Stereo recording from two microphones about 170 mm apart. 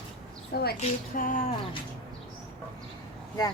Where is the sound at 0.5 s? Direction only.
70° left (ahead or behind).